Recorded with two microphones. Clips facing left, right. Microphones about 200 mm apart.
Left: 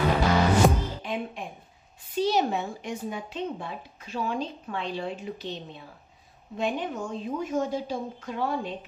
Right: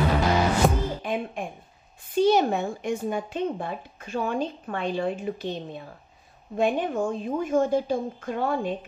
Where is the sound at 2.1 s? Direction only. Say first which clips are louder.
Right 5 dB; 50° right (ahead or behind).